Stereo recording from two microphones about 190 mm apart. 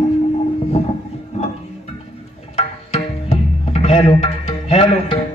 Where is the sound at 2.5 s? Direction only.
35° left (ahead or behind).